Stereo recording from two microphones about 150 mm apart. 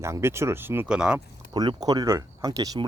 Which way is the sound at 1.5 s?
25° right (ahead or behind).